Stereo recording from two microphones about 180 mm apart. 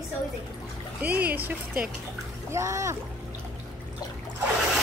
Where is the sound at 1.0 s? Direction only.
10° right (ahead or behind).